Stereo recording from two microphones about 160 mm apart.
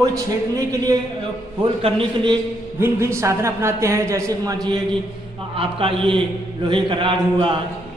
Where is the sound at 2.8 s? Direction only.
15° right (ahead or behind).